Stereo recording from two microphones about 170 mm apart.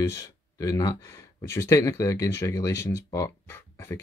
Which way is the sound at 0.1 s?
20° left (ahead or behind).